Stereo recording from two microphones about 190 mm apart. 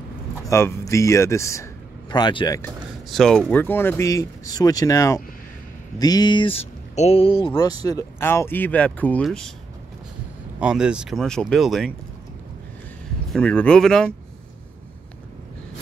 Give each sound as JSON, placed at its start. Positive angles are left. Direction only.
{"t": 0.5, "sound": "speech", "side_deg": 15}
{"t": 3.1, "sound": "speech", "side_deg": 5}
{"t": 10.6, "sound": "speech", "side_deg": -5}
{"t": 13.3, "sound": "speech", "side_deg": 5}